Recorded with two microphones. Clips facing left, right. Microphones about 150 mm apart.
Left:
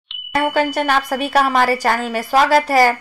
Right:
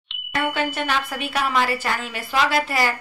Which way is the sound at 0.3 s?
45° left (ahead or behind).